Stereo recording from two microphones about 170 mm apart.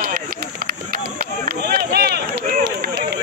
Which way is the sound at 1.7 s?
70° right (ahead or behind).